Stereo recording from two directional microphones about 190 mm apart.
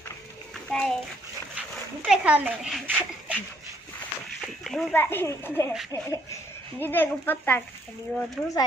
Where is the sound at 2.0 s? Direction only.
5° right (ahead or behind).